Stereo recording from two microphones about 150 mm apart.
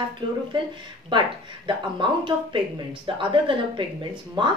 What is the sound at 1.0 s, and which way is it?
A woman's voice, 35° right (ahead or behind).